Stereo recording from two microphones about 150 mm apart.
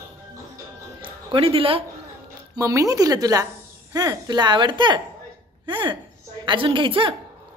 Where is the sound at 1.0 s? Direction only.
35° right (ahead or behind).